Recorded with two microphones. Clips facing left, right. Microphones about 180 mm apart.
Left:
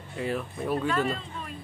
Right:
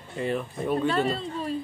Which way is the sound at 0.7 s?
35° right (ahead or behind).